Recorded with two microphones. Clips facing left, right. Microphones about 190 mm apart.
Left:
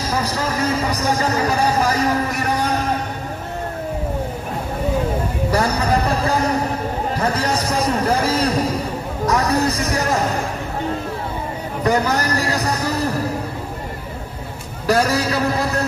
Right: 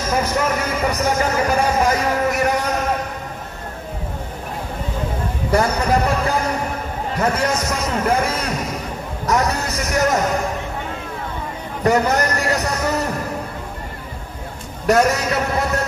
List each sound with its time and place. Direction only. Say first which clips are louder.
0.0 s music: right 2 dB; 35° left (ahead or behind)
5.5 s a sound: right 2 dB; 35° left (ahead or behind)
7.2 s a man's voice: right 3 dB; 35° left (ahead or behind)
11.8 s a man's voice: right 2 dB; 35° left (ahead or behind)
14.9 s a man's voice: right 1 dB; 35° left (ahead or behind)